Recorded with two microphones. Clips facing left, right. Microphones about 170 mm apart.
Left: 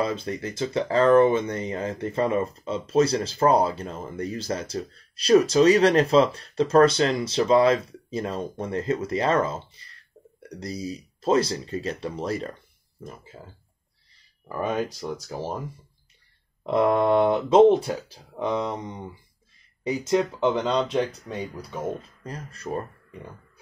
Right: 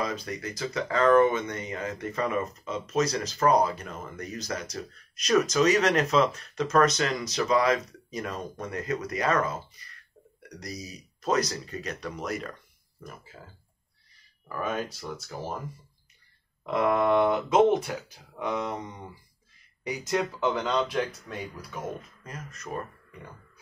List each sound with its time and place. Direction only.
0.0 s speech: 30° left (ahead or behind)
15.0 s speech: 35° left (ahead or behind)
16.7 s speech: 30° left (ahead or behind)